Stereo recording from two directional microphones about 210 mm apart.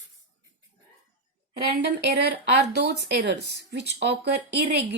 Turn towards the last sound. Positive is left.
turn(degrees=-55)  # may be behind; listen again after turning